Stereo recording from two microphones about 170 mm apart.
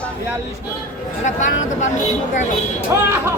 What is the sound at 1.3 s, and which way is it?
Speech, 45° left (ahead or behind).